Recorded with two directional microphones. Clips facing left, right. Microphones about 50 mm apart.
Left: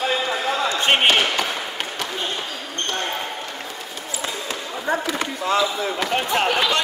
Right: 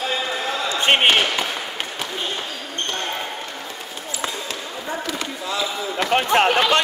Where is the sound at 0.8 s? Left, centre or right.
Centre.